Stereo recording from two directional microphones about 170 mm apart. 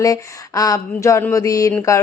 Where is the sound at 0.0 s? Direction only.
20° left (ahead or behind).